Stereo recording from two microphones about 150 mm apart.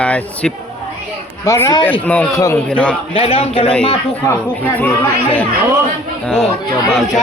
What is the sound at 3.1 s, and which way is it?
Speech, 40° left (ahead or behind).